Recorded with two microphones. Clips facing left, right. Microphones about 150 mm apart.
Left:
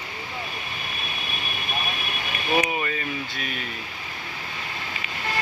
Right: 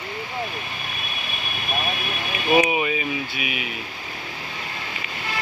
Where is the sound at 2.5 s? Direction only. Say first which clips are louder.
Right 5 dB; 15° right (ahead or behind).